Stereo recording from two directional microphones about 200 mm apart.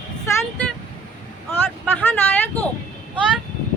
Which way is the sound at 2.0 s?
10° left (ahead or behind).